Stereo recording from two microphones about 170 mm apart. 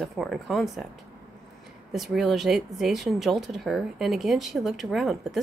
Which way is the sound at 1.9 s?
Centre (ahead or behind).